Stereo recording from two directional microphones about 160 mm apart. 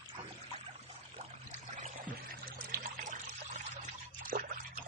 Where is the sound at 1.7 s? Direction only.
55° right (ahead or behind).